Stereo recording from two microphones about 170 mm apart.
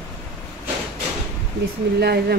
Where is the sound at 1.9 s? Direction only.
70° right (ahead or behind).